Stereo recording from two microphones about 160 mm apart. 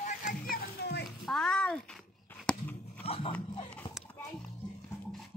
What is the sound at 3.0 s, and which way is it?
Speech, 35° left (ahead or behind).